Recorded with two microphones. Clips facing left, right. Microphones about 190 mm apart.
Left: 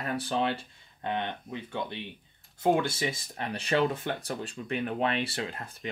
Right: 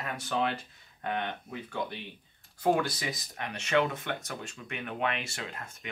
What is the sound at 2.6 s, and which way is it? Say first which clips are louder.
Speech: left 2 dB; 25° left (ahead or behind).